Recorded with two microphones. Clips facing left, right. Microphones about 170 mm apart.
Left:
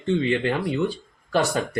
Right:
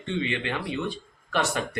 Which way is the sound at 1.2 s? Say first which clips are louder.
Left 5 dB; 35° left (ahead or behind).